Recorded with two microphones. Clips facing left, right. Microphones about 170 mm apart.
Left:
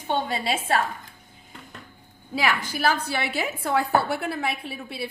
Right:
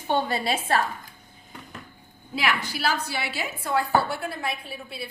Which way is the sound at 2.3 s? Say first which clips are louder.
Left 2 dB; 45° left (ahead or behind).